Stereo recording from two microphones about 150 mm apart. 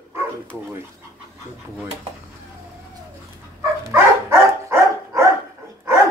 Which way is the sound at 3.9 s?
15° right (ahead or behind).